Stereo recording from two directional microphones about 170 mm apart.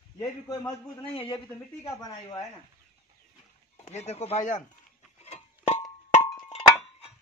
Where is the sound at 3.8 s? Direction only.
40° left (ahead or behind).